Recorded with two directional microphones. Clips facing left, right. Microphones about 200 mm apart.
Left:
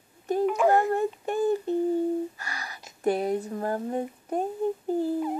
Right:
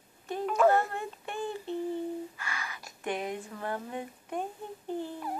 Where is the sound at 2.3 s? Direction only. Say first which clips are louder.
Left 1 dB; 40° left (ahead or behind).